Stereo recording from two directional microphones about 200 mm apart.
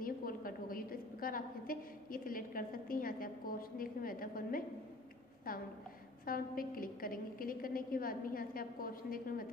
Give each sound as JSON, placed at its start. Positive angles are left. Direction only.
{"t": 0.0, "sound": "a woman's voice", "side_deg": 45}
{"t": 6.2, "sound": "a woman's voice", "side_deg": 45}